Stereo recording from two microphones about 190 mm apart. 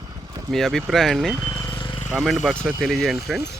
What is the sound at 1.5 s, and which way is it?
Vehicle, 15° left (ahead or behind).